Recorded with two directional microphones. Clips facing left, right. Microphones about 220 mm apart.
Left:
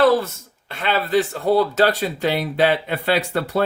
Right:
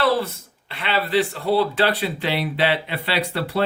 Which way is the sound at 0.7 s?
45° left (ahead or behind).